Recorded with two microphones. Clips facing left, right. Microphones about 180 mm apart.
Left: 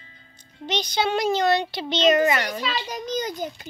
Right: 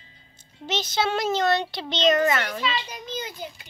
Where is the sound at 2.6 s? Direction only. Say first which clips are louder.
Left 1 dB; 45° left (ahead or behind).